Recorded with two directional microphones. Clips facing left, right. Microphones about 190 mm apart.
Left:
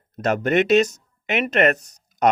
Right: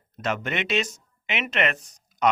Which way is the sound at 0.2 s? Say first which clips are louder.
Left 9 dB; 40° left (ahead or behind).